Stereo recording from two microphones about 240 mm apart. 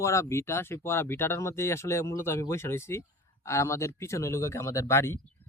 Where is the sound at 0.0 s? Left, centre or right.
Centre.